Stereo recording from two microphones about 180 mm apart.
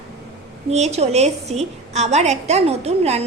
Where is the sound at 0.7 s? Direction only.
35° right (ahead or behind).